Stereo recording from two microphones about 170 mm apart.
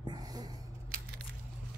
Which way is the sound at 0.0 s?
25° right (ahead or behind).